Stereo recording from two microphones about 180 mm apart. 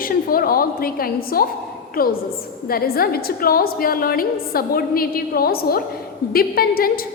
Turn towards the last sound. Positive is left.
turn(degrees=55)  # may be behind; listen again after turning